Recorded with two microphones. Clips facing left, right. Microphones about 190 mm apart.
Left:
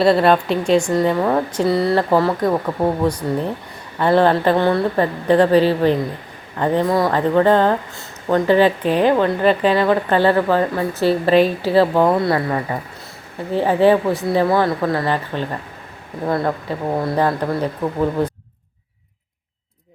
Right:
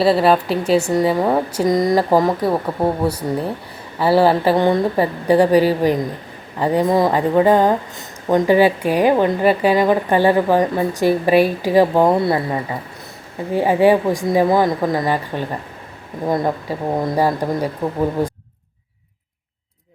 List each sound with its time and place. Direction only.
0.0 s speech: 5° right (ahead or behind)